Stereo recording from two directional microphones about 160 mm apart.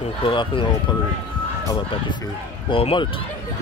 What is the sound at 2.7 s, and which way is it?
Speech, 35° left (ahead or behind).